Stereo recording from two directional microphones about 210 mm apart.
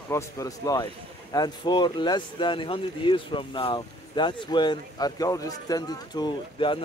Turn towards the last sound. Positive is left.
turn(degrees=20)  # may be behind; listen again after turning